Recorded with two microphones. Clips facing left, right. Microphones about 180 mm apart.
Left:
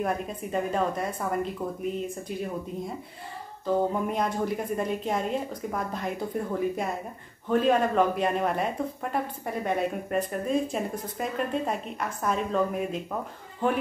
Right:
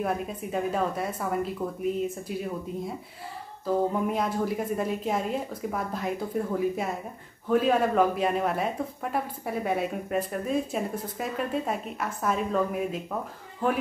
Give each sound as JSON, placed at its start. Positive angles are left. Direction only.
{"t": 0.0, "sound": "speech", "side_deg": -5}
{"t": 3.6, "sound": "speech", "side_deg": -5}